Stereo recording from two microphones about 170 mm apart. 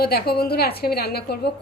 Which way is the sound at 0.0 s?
65° left (ahead or behind).